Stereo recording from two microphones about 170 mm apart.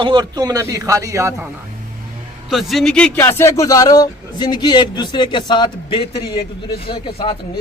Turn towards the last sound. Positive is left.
turn(degrees=30)  # may be behind; listen again after turning